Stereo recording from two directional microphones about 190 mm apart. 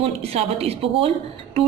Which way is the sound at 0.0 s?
30° right (ahead or behind).